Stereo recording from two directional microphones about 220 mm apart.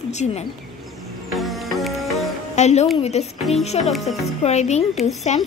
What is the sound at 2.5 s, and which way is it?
A woman's voice, 30° left (ahead or behind).